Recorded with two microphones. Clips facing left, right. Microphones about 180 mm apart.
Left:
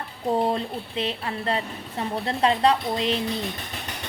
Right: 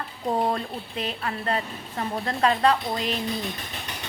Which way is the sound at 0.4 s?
30° left (ahead or behind).